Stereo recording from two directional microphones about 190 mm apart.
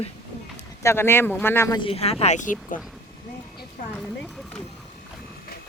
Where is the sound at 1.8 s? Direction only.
30° left (ahead or behind).